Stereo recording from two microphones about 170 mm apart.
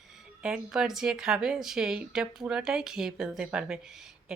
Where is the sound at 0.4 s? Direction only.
5° right (ahead or behind).